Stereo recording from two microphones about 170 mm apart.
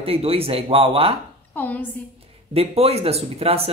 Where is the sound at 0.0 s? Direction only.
35° right (ahead or behind).